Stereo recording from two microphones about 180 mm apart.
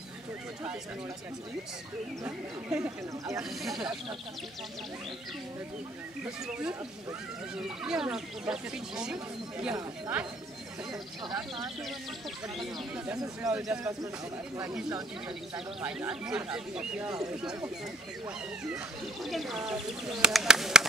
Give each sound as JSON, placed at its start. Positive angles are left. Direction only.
{"t": 2.2, "sound": "speech", "side_deg": -15}
{"t": 6.2, "sound": "speech", "side_deg": -5}
{"t": 9.8, "sound": "speech", "side_deg": -15}
{"t": 13.5, "sound": "speech", "side_deg": -5}
{"t": 15.2, "sound": "speech", "side_deg": -5}
{"t": 19.2, "sound": "speech", "side_deg": 0}